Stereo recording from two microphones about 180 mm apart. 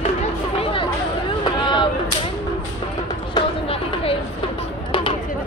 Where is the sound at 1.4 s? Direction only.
25° left (ahead or behind).